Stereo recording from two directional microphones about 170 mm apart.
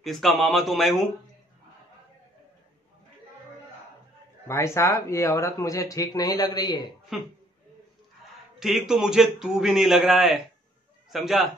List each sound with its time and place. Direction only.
0.0 s a man's voice: centre (ahead or behind)
4.5 s speech: 15° left (ahead or behind)
7.1 s a man's voice: centre (ahead or behind)
8.5 s a man's voice: 5° right (ahead or behind)